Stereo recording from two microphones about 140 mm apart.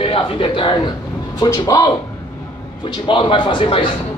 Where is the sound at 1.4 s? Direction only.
25° left (ahead or behind).